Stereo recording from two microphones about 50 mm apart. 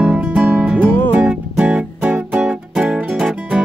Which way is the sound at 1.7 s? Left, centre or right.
Centre.